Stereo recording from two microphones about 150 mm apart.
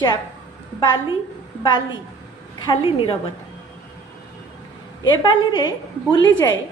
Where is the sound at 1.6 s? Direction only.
30° left (ahead or behind).